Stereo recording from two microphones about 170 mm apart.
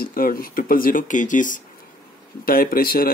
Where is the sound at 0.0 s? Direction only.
60° left (ahead or behind).